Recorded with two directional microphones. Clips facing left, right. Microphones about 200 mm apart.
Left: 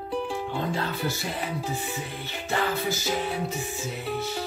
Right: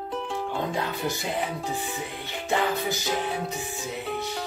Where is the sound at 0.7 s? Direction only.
15° right (ahead or behind).